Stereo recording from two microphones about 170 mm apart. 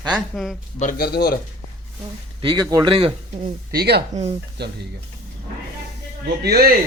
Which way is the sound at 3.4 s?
65° right (ahead or behind).